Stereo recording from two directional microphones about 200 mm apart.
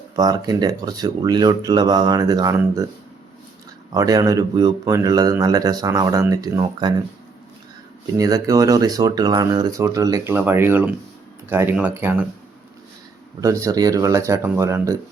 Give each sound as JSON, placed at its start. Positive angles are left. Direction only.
{"t": 0.2, "sound": "speech", "side_deg": -20}
{"t": 3.9, "sound": "speech", "side_deg": -20}
{"t": 8.1, "sound": "speech", "side_deg": -15}
{"t": 13.4, "sound": "speech", "side_deg": -15}